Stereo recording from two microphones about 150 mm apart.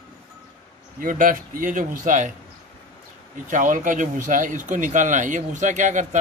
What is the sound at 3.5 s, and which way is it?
Speech, 60° right (ahead or behind).